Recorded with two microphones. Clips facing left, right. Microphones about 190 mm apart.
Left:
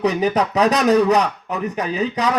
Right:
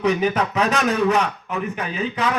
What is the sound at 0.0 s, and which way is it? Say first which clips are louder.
A man's voice: left 2 dB; 35° left (ahead or behind).